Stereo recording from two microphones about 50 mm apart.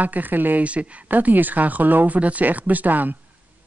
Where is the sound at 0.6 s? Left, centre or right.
Right.